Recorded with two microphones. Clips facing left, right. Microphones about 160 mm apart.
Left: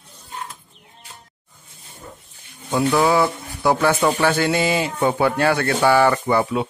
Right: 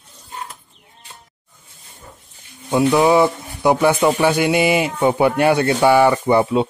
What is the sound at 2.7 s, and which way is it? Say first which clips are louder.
Speech: right 4 dB; 20° right (ahead or behind).